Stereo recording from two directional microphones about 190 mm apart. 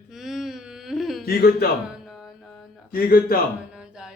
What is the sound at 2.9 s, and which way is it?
Speech, 50° left (ahead or behind).